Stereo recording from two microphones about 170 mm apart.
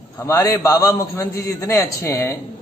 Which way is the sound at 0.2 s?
15° left (ahead or behind).